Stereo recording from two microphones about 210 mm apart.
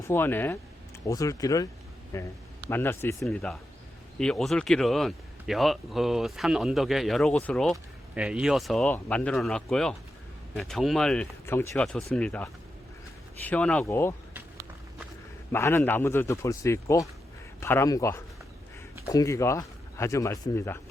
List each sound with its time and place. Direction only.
0.1 s speech: 10° left (ahead or behind)
15.5 s speech: 10° left (ahead or behind)